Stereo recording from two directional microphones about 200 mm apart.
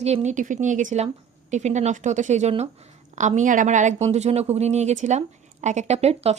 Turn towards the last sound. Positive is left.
turn(degrees=-30)  # may be behind; listen again after turning